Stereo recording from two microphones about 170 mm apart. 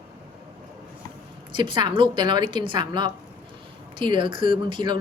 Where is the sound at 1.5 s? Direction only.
25° right (ahead or behind).